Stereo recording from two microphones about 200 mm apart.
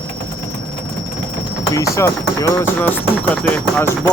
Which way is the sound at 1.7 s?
15° left (ahead or behind).